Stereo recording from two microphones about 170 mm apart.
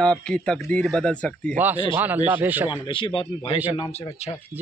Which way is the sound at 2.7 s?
30° left (ahead or behind).